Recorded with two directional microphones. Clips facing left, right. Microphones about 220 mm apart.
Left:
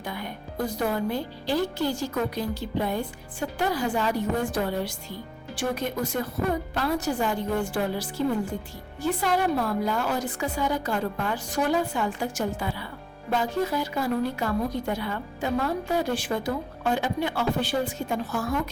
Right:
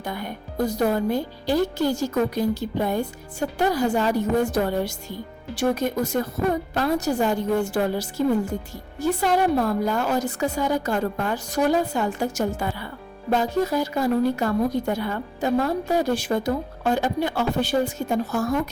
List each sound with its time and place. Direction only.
0.0 s a woman's voice: 45° right (ahead or behind)
9.0 s a woman's voice: 40° right (ahead or behind)